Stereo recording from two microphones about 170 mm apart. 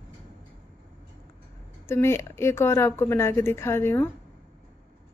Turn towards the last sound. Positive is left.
turn(degrees=15)  # may be behind; listen again after turning